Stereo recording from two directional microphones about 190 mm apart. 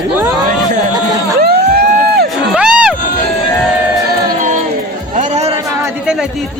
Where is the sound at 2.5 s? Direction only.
5° right (ahead or behind).